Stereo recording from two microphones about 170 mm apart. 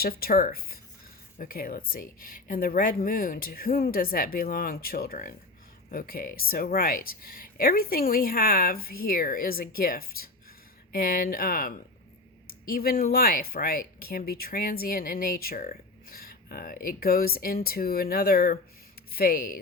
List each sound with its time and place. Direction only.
0.0 s speech: 65° left (ahead or behind)